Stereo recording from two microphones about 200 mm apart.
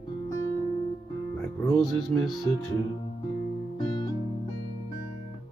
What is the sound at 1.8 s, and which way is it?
Music, centre (ahead or behind).